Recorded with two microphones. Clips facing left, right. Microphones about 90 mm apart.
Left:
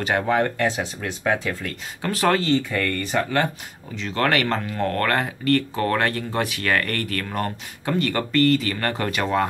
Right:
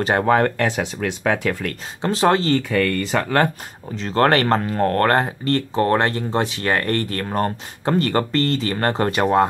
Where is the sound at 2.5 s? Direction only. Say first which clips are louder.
Right 4 dB; 85° right.